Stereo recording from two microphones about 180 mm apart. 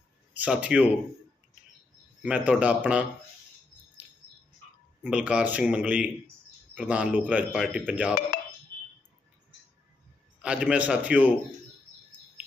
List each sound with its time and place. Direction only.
0.3 s a man's voice: 5° right (ahead or behind)
2.2 s a man's voice: 5° right (ahead or behind)
5.0 s a man's voice: 5° right (ahead or behind)
8.3 s a sound: 50° left (ahead or behind)
10.4 s a man's voice: 5° right (ahead or behind)